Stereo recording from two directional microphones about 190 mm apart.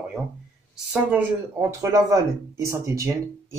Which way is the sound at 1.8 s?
15° right (ahead or behind).